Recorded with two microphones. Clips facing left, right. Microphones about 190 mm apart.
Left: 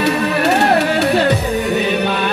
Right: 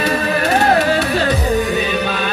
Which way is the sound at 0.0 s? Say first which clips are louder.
Left 2 dB; 65° left (ahead or behind).